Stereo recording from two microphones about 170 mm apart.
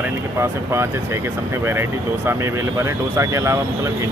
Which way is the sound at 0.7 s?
15° right (ahead or behind).